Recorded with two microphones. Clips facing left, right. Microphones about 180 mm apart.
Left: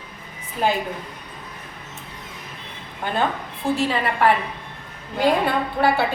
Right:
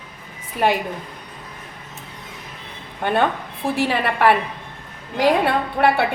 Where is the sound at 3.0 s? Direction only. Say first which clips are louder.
Right 4 dB; 60° right (ahead or behind).